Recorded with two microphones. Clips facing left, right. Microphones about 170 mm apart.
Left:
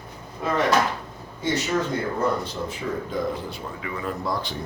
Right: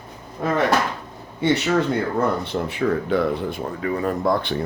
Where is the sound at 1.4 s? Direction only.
65° right (ahead or behind); by 4.1 s 40° right (ahead or behind).